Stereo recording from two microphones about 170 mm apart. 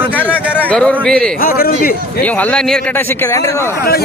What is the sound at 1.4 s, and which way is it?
Speech, 60° left (ahead or behind).